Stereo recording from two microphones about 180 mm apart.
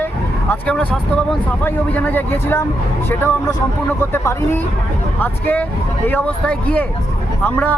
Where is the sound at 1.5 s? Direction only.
10° left (ahead or behind).